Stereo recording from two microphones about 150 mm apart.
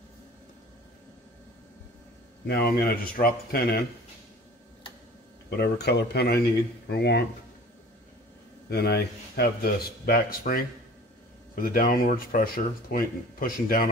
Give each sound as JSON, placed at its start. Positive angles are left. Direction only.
{"t": 2.4, "sound": "a man's voice", "side_deg": 90}
{"t": 5.5, "sound": "a man's voice", "side_deg": 90}
{"t": 8.6, "sound": "a man's voice", "side_deg": 90}
{"t": 10.4, "sound": "speech", "side_deg": 60}
{"t": 11.5, "sound": "speech", "side_deg": 70}